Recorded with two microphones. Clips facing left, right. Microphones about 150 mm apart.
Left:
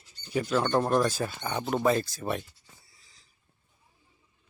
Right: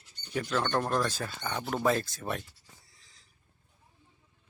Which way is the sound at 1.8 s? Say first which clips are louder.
Left 1 dB; centre (ahead or behind).